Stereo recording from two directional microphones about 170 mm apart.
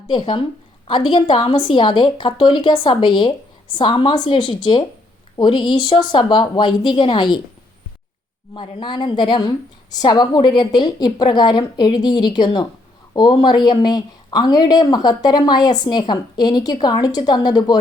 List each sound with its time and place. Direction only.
0.1 s speech: 30° left (ahead or behind)
8.5 s speech: 30° left (ahead or behind)